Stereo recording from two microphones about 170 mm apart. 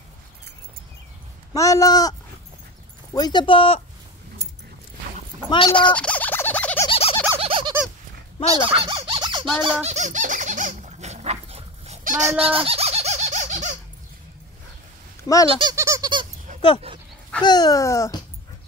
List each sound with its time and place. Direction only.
1.5 s speech: 20° left (ahead or behind)
3.2 s speech: 25° left (ahead or behind)
5.5 s speech: 30° left (ahead or behind)
5.8 s a sound: 5° left (ahead or behind)
6.9 s a sound: 35° left (ahead or behind)
7.3 s fowl: 30° right (ahead or behind)
9.6 s squeak: 35° right (ahead or behind)
12.0 s honk: 50° right (ahead or behind)
12.4 s squeak: 35° right (ahead or behind)
15.3 s speech: 20° left (ahead or behind)
15.7 s squeak: 15° right (ahead or behind)
16.9 s dog: 35° right (ahead or behind)
17.4 s speech: 25° left (ahead or behind)